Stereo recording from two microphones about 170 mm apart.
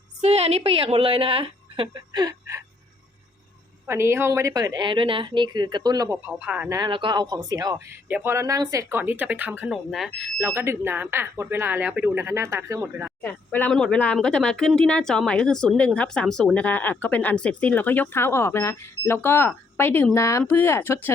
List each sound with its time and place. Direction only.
0.2 s a woman's voice: 40° right (ahead or behind)
3.8 s a woman's voice: 15° right (ahead or behind)
6.2 s speech: 5° right (ahead or behind)
6.7 s a woman's voice: 25° right (ahead or behind); by 10.1 s centre (ahead or behind)
10.4 s speech: 15° right (ahead or behind)
13.2 s speech: 10° left (ahead or behind)